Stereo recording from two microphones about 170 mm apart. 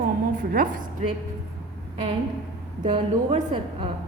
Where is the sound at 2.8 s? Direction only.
30° right (ahead or behind).